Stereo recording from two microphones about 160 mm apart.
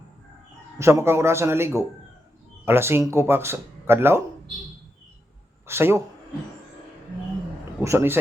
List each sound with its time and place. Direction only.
0.8 s speech: 15° right (ahead or behind)
5.6 s speech: 15° right (ahead or behind)
7.8 s speech: 15° right (ahead or behind)